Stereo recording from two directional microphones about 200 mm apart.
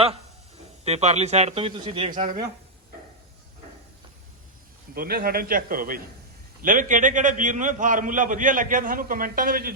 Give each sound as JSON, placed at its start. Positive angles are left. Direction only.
{"t": 0.9, "sound": "a man's voice", "side_deg": -35}
{"t": 2.1, "sound": "a man's voice", "side_deg": -40}
{"t": 4.9, "sound": "a man's voice", "side_deg": -45}